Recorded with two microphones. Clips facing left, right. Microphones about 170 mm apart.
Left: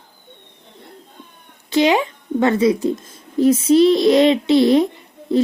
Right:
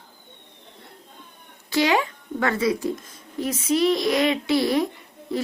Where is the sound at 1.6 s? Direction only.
20° left (ahead or behind).